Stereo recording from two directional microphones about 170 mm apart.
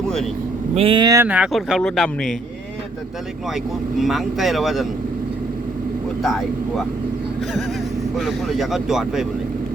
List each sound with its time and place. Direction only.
0.7 s speech: 35° right (ahead or behind)
1.3 s speech: 5° right (ahead or behind)
3.9 s speech: centre (ahead or behind)
8.1 s speech: centre (ahead or behind)